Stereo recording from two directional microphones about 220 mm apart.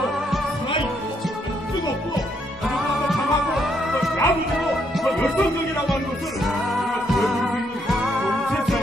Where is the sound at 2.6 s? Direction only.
Centre (ahead or behind).